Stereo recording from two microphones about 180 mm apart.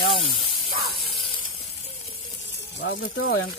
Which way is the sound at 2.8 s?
90° left.